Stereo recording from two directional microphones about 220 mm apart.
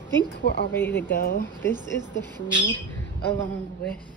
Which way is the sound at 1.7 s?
20° right (ahead or behind).